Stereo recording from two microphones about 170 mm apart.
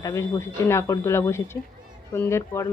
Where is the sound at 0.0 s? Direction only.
15° left (ahead or behind).